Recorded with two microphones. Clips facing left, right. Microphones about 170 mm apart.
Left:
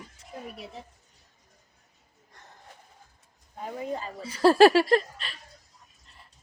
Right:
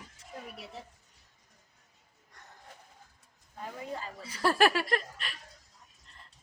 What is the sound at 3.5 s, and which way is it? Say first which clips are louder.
Speech: left 6 dB; 20° left (ahead or behind).